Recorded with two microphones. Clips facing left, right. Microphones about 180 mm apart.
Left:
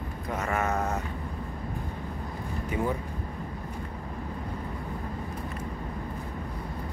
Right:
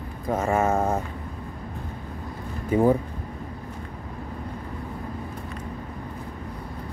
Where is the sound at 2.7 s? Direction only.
35° right (ahead or behind).